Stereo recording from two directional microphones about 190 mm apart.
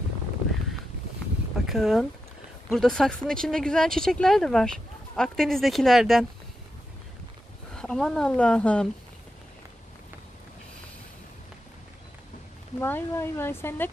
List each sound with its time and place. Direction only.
1.7 s speech: centre (ahead or behind)
7.7 s speech: 5° left (ahead or behind)
12.8 s speech: 10° left (ahead or behind)